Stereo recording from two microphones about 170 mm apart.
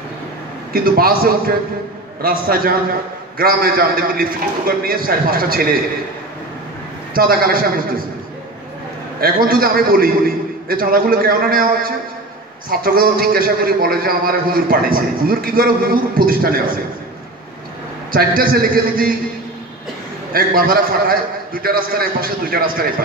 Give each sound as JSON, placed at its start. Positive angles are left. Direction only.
{"t": 0.7, "sound": "a man's voice", "side_deg": -60}
{"t": 7.2, "sound": "a man's voice", "side_deg": -60}
{"t": 9.2, "sound": "a man's voice", "side_deg": -60}
{"t": 18.1, "sound": "a man's voice", "side_deg": -60}
{"t": 20.3, "sound": "a man's voice", "side_deg": -60}